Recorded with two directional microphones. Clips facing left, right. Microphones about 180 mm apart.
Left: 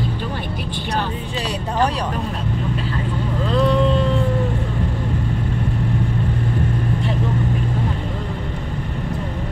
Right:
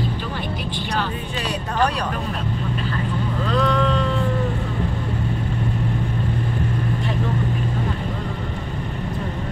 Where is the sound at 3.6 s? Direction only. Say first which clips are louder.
Left 4 dB; 25° left (ahead or behind).